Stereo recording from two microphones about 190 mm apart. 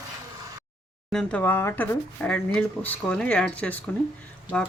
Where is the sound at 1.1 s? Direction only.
5° left (ahead or behind).